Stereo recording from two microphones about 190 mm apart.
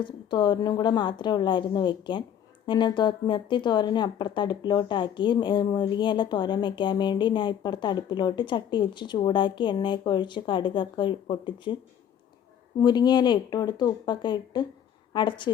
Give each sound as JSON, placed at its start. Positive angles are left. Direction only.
{"t": 0.0, "sound": "speech", "side_deg": 25}
{"t": 12.8, "sound": "a woman's voice", "side_deg": 20}